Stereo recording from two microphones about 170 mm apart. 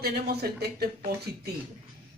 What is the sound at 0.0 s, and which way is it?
Speech, 65° right (ahead or behind).